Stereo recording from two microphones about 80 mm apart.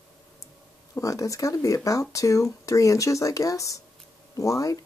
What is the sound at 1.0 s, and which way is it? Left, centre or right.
Speech, left.